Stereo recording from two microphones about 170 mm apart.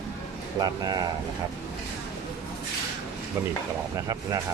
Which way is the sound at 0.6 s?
25° right (ahead or behind).